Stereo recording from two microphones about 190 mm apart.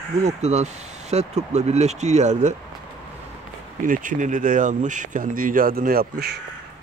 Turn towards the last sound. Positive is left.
turn(degrees=-55)  # may be behind; listen again after turning